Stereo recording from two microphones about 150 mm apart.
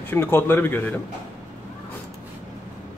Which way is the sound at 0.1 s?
15° left (ahead or behind).